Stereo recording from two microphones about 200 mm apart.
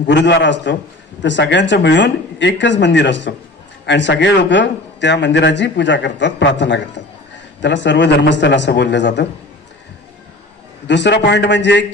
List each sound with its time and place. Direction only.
0.0 s a man's voice: 60° left (ahead or behind)
10.9 s a man's voice: 60° left (ahead or behind)